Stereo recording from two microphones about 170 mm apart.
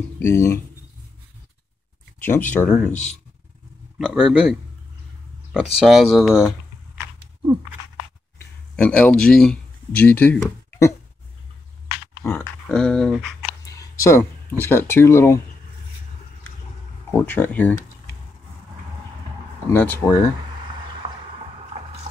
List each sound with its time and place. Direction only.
0.2 s speech: 15° left (ahead or behind)
2.2 s speech: 10° left (ahead or behind)
4.1 s speech: 5° right (ahead or behind)
8.7 s speech: 5° left (ahead or behind)
12.2 s speech: 10° left (ahead or behind)
13.7 s a sound: 20° left (ahead or behind)
14.6 s speech: 15° left (ahead or behind)
17.1 s speech: 10° left (ahead or behind)
19.7 s speech: 15° left (ahead or behind)
21.0 s a sound: 30° right (ahead or behind)